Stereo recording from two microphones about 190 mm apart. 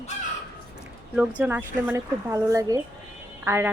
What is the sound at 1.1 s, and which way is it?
Speech, 5° right (ahead or behind).